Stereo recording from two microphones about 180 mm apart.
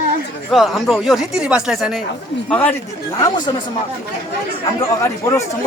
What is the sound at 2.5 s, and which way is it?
Speech, 10° left (ahead or behind).